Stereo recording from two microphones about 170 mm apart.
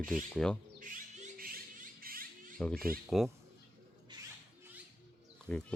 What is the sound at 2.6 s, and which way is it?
Speech, 5° left (ahead or behind).